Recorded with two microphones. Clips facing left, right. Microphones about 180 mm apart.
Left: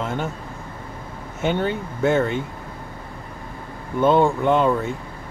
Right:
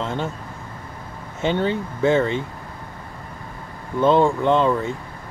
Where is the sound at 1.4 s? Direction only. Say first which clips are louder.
Right 1 dB; 10° left (ahead or behind).